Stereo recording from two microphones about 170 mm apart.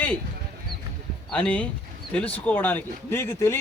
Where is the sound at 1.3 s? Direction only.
10° left (ahead or behind).